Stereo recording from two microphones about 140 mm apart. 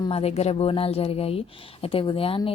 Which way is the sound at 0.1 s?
45° left (ahead or behind).